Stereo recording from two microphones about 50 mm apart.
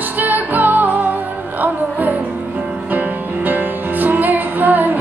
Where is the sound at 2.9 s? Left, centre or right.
Right.